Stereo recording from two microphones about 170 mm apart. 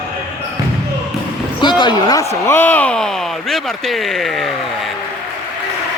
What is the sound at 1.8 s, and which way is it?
Speech, 25° left (ahead or behind).